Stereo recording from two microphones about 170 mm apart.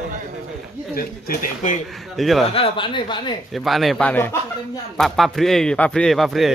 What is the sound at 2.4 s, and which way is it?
Speech, 35° left (ahead or behind).